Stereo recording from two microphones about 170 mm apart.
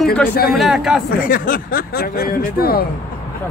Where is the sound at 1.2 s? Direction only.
55° left (ahead or behind).